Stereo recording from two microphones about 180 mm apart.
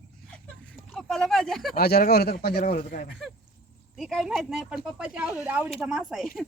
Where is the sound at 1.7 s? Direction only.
55° left (ahead or behind).